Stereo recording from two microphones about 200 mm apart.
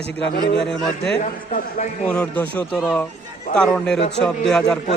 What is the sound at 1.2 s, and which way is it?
Speech, 40° left (ahead or behind).